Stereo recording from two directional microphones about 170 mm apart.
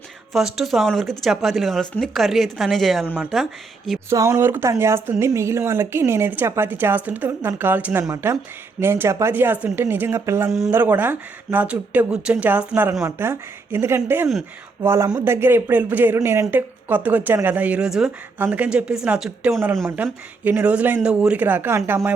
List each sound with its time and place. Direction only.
0.3 s speech: centre (ahead or behind)
4.1 s speech: 15° right (ahead or behind)